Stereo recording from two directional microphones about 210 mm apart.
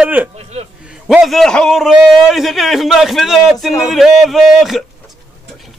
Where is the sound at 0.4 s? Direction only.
30° right (ahead or behind).